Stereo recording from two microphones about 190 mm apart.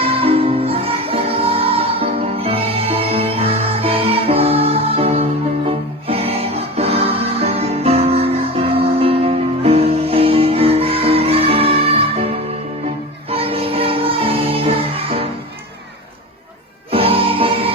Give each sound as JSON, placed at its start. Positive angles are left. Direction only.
{"t": 0.0, "sound": "music", "side_deg": -30}
{"t": 16.9, "sound": "music", "side_deg": -30}